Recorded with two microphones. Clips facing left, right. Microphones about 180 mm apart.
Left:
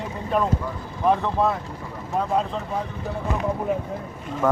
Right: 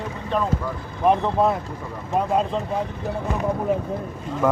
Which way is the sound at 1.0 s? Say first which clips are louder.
Right 2 dB; 20° right (ahead or behind).